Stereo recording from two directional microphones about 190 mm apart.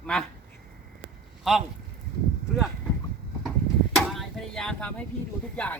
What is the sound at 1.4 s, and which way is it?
Speech, centre (ahead or behind).